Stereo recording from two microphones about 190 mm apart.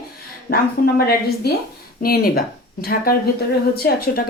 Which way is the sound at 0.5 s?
55° left (ahead or behind).